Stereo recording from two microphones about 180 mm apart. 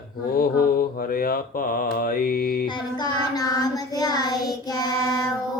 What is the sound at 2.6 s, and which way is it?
Child singing, 25° left (ahead or behind).